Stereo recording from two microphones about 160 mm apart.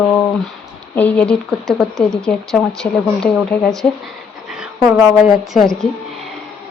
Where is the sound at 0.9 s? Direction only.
10° left (ahead or behind).